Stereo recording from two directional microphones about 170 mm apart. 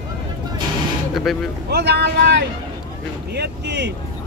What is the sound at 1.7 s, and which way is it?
Speech, 75° right (ahead or behind).